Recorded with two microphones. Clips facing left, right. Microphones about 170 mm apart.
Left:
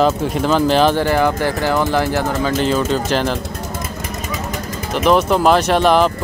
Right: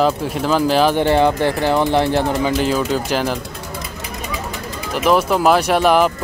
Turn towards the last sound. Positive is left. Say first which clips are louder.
# left 1 dB
turn(degrees=-10)  # may be behind; listen again after turning